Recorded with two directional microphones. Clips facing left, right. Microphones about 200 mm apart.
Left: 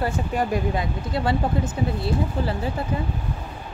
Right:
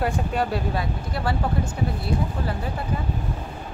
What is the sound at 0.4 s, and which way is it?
Speech, 15° left (ahead or behind).